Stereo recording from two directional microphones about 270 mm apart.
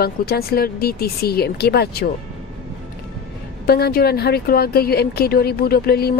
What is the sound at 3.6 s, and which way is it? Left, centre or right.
A woman's voice, left.